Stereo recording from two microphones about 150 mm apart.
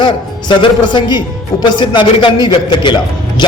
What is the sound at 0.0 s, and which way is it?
A man's voice, 30° left (ahead or behind).